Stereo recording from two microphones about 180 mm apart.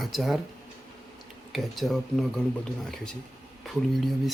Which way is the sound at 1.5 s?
Centre (ahead or behind).